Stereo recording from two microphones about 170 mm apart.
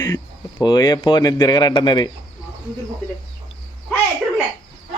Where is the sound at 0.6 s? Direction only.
25° left (ahead or behind).